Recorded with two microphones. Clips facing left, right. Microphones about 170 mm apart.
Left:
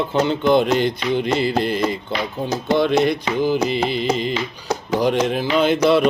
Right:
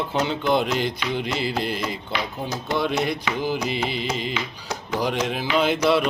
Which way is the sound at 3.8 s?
5° right (ahead or behind).